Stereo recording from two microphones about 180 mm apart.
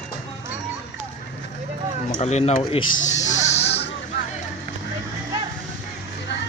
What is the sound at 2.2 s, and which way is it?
Speech, 35° left (ahead or behind).